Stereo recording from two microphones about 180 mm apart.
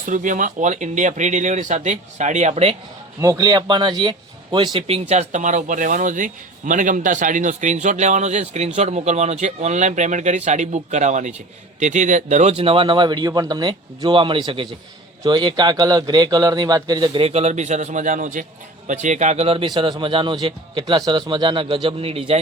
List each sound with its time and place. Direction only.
0.0 s speech: 45° right (ahead or behind)
3.2 s speech: 20° right (ahead or behind)